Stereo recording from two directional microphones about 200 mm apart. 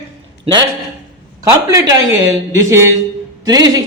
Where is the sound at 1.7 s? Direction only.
15° right (ahead or behind).